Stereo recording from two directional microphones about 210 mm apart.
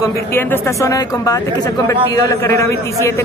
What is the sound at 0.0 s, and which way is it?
Speech, 10° left (ahead or behind).